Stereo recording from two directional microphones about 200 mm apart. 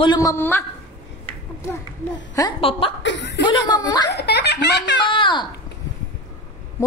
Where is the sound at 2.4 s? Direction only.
20° left (ahead or behind).